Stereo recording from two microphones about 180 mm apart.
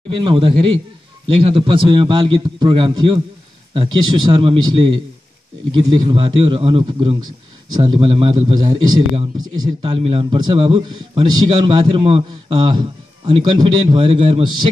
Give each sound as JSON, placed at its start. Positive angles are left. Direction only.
{"t": 0.1, "sound": "a man's voice", "side_deg": -25}